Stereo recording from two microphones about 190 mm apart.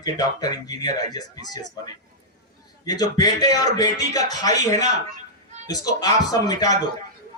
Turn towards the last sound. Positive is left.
turn(degrees=20)  # may be behind; listen again after turning